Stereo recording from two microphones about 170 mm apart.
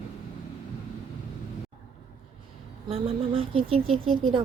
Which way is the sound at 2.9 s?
35° right (ahead or behind).